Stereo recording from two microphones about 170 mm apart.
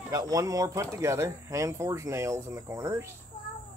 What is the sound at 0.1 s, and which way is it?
Speech, 20° right (ahead or behind).